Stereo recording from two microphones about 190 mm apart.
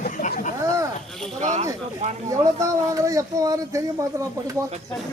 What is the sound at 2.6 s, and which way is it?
Speech, 15° right (ahead or behind).